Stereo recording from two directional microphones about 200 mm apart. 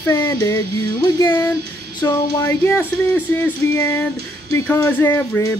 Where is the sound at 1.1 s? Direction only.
15° left (ahead or behind).